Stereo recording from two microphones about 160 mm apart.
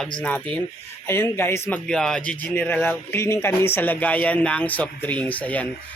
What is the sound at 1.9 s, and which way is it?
Speech, 5° left (ahead or behind).